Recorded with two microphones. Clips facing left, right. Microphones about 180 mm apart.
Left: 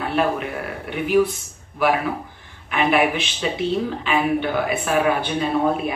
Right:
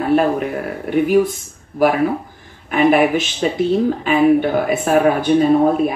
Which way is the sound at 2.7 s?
45° right (ahead or behind).